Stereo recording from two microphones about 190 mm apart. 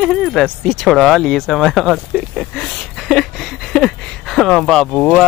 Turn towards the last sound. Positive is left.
turn(degrees=0)  # may be behind; listen again after turning